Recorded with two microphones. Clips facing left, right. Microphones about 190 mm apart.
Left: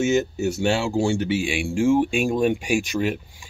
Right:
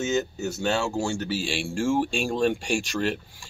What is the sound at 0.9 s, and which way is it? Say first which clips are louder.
Speech: left 6 dB; 30° left (ahead or behind).